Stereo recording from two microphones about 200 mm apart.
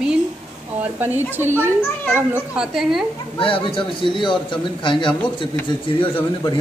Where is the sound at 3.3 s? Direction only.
25° left (ahead or behind).